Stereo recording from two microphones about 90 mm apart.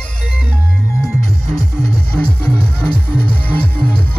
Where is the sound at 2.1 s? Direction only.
5° left (ahead or behind).